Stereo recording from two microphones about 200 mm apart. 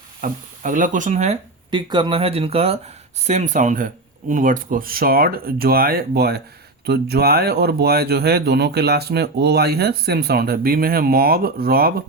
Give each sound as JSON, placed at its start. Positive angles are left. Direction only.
{"t": 0.2, "sound": "speech", "side_deg": -40}
{"t": 1.7, "sound": "speech", "side_deg": -25}